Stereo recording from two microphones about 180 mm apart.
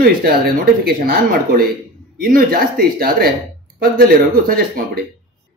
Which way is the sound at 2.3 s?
55° right (ahead or behind).